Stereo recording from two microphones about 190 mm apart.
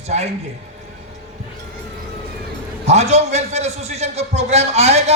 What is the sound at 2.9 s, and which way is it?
A man's voice, 35° right (ahead or behind).